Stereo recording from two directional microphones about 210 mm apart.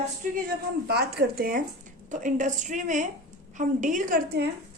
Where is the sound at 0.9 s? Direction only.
50° right (ahead or behind).